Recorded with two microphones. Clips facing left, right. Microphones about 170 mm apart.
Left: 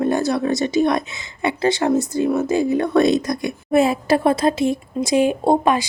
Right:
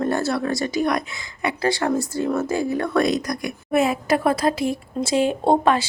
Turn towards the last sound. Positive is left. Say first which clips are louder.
# left 1 dB
turn(degrees=10)  # may be behind; listen again after turning